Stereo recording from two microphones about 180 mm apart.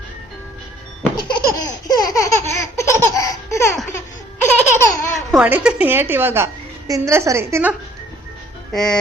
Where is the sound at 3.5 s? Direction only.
15° left (ahead or behind).